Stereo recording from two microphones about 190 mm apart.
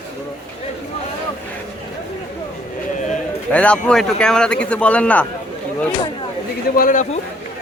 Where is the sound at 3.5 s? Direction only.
5° left (ahead or behind).